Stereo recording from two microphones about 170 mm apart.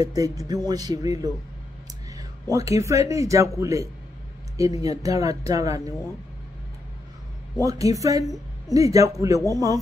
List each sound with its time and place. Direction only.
0.0 s speech: 20° right (ahead or behind)
2.5 s speech: 20° right (ahead or behind)
7.6 s speech: 20° right (ahead or behind)